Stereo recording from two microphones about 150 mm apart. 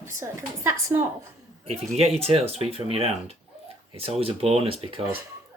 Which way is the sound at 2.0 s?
40° right (ahead or behind).